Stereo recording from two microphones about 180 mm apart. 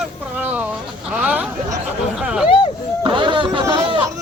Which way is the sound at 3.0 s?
25° right (ahead or behind).